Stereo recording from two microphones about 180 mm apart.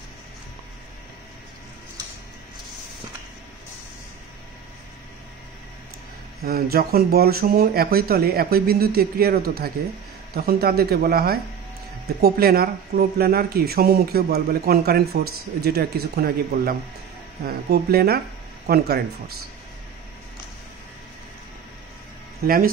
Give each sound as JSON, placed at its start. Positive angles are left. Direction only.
{"t": 6.4, "sound": "speech", "side_deg": -55}
{"t": 22.4, "sound": "speech", "side_deg": -55}